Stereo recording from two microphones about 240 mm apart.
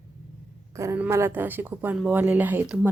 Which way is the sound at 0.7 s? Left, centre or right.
Centre.